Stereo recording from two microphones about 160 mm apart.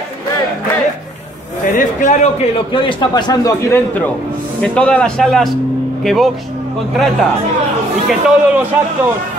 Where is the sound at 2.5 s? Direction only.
30° left (ahead or behind); by 6.2 s centre (ahead or behind).